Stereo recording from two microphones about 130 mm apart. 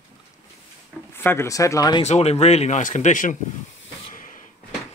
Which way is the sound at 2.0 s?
55° left (ahead or behind).